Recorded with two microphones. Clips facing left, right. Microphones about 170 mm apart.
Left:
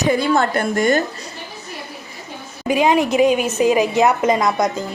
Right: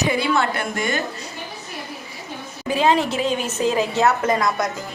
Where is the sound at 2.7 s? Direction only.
15° left (ahead or behind).